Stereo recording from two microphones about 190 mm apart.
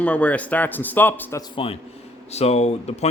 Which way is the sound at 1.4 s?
30° left (ahead or behind).